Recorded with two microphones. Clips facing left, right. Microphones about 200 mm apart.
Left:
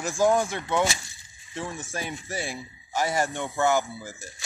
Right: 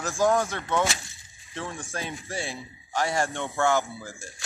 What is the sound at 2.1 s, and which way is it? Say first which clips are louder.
Speech: left 1 dB; centre (ahead or behind).